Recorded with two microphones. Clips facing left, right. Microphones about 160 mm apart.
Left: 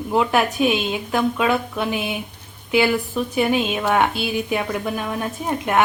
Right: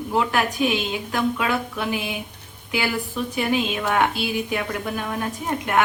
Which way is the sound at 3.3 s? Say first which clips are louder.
Left 3 dB; 20° left (ahead or behind).